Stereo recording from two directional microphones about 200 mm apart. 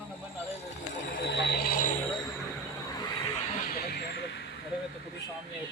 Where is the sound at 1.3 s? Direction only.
60° left (ahead or behind).